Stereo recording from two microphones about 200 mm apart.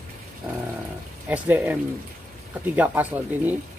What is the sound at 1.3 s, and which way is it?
Speech, 10° right (ahead or behind).